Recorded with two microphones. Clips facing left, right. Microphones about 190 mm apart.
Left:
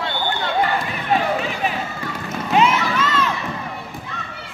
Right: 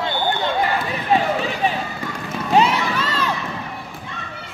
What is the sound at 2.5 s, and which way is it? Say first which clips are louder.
Crowd: even; 35° right (ahead or behind).